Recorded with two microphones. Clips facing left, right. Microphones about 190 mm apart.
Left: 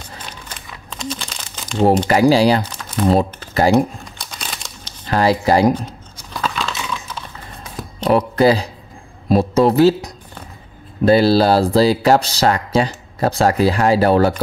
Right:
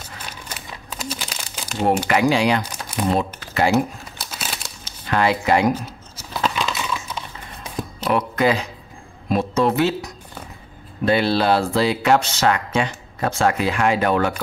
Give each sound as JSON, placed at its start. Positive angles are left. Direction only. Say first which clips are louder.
{"t": 0.3, "sound": "crumpling", "louder": "even", "side_deg": -5}
{"t": 2.0, "sound": "speech", "louder": "left 5 dB", "side_deg": 35}
{"t": 2.6, "sound": "typing", "louder": "left 4 dB", "side_deg": -10}
{"t": 3.1, "sound": "speech", "louder": "left 6 dB", "side_deg": 35}
{"t": 3.7, "sound": "crumpling", "louder": "left 4 dB", "side_deg": -5}
{"t": 5.0, "sound": "speech", "louder": "left 4 dB", "side_deg": 35}
{"t": 6.1, "sound": "scissors", "louder": "right 1 dB", "side_deg": -5}
{"t": 8.0, "sound": "speech", "louder": "left 6 dB", "side_deg": 35}